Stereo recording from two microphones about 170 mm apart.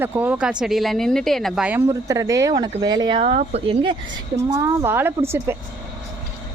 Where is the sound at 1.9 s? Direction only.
20° right (ahead or behind).